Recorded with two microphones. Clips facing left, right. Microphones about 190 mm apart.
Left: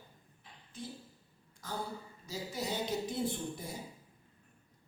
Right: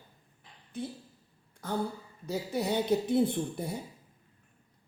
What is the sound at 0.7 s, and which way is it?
A woman's voice, 60° right (ahead or behind).